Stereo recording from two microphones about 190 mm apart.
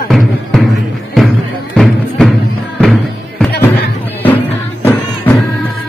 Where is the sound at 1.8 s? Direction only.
Centre (ahead or behind).